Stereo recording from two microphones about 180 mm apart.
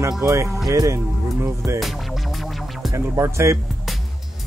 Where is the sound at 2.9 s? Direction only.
15° right (ahead or behind).